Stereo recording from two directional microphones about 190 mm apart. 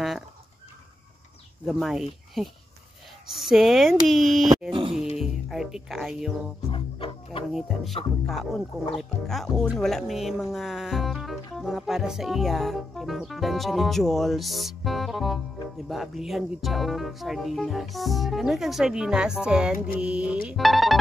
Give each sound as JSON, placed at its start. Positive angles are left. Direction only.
{"t": 1.7, "sound": "speech", "side_deg": 0}
{"t": 4.6, "sound": "music", "side_deg": -25}
{"t": 5.2, "sound": "speech", "side_deg": 0}
{"t": 6.7, "sound": "music", "side_deg": 30}
{"t": 7.5, "sound": "speech", "side_deg": 0}